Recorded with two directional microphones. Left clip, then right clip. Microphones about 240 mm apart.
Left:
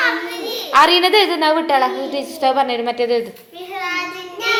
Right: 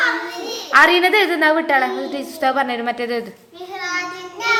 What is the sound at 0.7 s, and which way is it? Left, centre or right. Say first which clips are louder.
A woman's voice: even; centre.